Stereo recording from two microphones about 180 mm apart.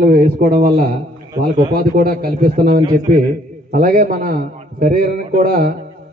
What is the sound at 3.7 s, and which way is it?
A man's voice, 45° right (ahead or behind).